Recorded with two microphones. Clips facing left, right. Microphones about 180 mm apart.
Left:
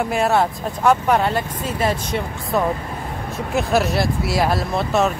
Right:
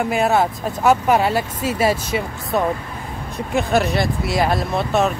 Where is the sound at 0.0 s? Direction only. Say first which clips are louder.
Right 1 dB; centre (ahead or behind).